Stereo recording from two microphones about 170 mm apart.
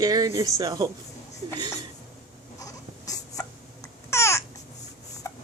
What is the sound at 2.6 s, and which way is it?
Babbling, 20° left (ahead or behind).